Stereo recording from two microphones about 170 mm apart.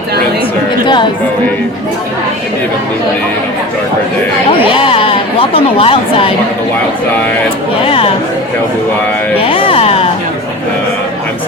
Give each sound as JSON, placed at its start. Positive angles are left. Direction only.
{"t": 4.7, "sound": "speech", "side_deg": 30}
{"t": 7.9, "sound": "speech", "side_deg": 35}
{"t": 9.4, "sound": "speech", "side_deg": 30}